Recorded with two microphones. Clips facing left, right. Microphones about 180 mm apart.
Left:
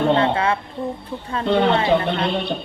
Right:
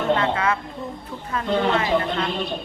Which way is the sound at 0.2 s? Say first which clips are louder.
Left 3 dB; 30° left (ahead or behind).